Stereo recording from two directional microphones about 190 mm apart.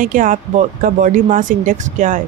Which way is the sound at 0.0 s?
45° right (ahead or behind).